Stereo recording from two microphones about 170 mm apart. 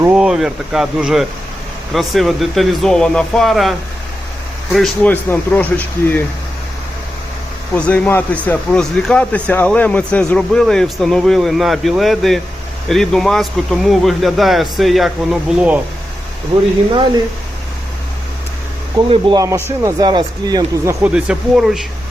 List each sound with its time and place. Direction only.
0.0 s speech: 5° right (ahead or behind); by 6.2 s 10° left (ahead or behind)
7.8 s speech: 10° left (ahead or behind); by 15.8 s 5° right (ahead or behind)
16.5 s speech: 30° right (ahead or behind)
19.1 s a man's voice: 30° right (ahead or behind)
19.4 s speech: 15° right (ahead or behind)
21.0 s speech: 5° right (ahead or behind)